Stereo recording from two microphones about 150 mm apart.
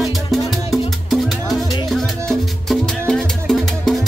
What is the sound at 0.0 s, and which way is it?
Music, centre (ahead or behind).